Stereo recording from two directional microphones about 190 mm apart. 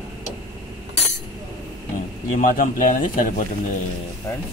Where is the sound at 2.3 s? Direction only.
45° left (ahead or behind).